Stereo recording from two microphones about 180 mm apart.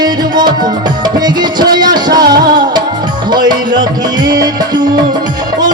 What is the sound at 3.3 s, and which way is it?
Music, 25° right (ahead or behind).